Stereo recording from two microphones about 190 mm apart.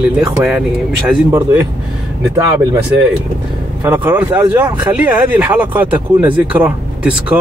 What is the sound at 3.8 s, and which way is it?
Speech, 10° right (ahead or behind).